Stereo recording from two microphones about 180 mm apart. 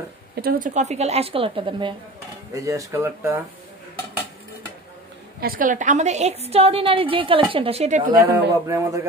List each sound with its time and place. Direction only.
0.4 s a woman's voice: 50° right (ahead or behind); by 3.3 s 15° right (ahead or behind)
5.4 s a woman's voice: 50° right (ahead or behind)
8.2 s speech: 15° right (ahead or behind)